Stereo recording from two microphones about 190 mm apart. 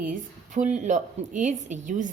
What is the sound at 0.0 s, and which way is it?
A woman's voice, 45° right (ahead or behind).